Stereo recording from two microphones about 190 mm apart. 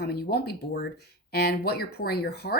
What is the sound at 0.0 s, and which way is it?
Speech, 60° left (ahead or behind).